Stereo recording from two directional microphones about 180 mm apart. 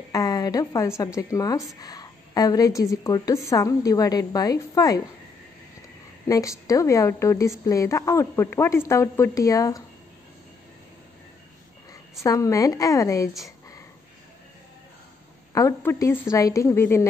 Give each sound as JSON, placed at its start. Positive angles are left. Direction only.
{"t": 0.1, "sound": "a woman's voice", "side_deg": 20}
{"t": 6.2, "sound": "a woman's voice", "side_deg": 20}
{"t": 11.9, "sound": "a woman's voice", "side_deg": 20}
{"t": 15.5, "sound": "a woman's voice", "side_deg": 15}